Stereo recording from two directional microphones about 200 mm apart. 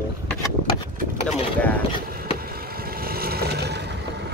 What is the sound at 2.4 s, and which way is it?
Vehicle, 50° right (ahead or behind).